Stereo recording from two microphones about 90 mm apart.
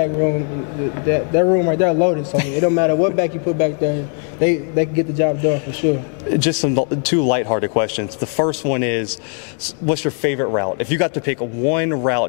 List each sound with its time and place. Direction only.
0.0 s a man's voice: 20° left (ahead or behind)